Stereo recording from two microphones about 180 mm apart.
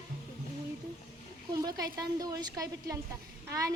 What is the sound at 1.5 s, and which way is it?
A woman's voice, 20° right (ahead or behind).